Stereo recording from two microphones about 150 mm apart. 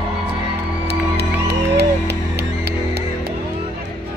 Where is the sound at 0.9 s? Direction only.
90° right.